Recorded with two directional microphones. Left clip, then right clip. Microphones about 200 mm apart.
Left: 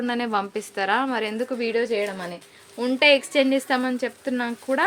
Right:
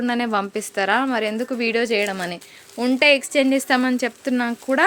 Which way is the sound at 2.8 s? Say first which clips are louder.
Right 2 dB; 30° right (ahead or behind).